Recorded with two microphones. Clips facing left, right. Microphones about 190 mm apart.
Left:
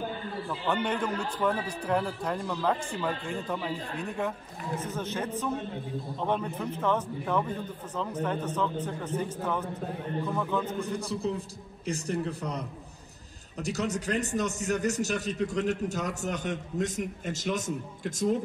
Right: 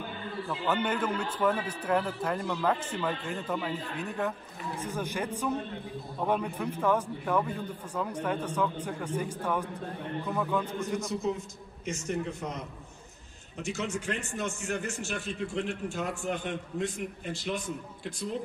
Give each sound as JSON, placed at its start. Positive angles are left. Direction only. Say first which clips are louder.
{"t": 0.5, "sound": "a man's voice", "louder": "even", "side_deg": -5}
{"t": 4.7, "sound": "a man's voice", "louder": "left 1 dB", "side_deg": -10}
{"t": 10.8, "sound": "a man's voice", "louder": "even", "side_deg": 35}